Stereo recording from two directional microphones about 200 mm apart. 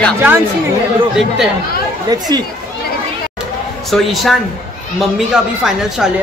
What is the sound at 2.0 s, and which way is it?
Speech, 20° right (ahead or behind).